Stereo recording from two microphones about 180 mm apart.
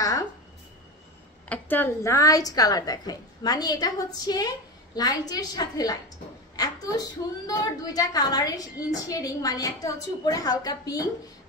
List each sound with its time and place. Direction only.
1.5 s a woman's voice: 10° left (ahead or behind)